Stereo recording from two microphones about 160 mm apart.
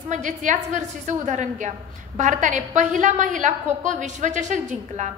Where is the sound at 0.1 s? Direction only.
50° right (ahead or behind).